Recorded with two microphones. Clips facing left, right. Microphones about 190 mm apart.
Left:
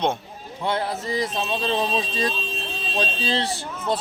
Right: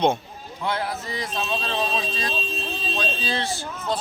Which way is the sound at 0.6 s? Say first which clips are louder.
Left 2 dB; 30° left (ahead or behind).